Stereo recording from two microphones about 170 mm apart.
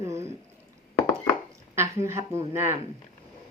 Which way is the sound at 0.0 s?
15° right (ahead or behind).